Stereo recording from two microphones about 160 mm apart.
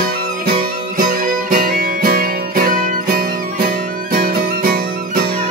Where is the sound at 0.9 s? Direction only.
65° right (ahead or behind).